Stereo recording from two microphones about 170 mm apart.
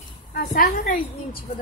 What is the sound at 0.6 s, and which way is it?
Speech, 50° left (ahead or behind).